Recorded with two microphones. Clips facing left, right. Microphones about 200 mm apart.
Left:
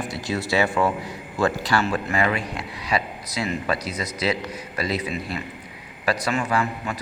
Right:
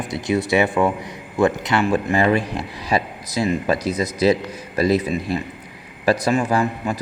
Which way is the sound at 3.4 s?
40° right (ahead or behind).